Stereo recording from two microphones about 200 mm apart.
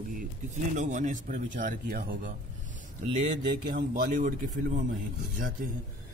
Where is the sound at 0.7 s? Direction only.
35° right (ahead or behind).